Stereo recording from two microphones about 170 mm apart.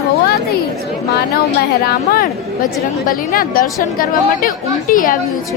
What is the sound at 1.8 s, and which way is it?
A woman's voice, 60° left (ahead or behind).